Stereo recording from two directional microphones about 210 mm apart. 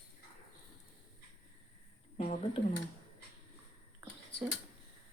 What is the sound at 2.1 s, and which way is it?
Speech, 40° left (ahead or behind).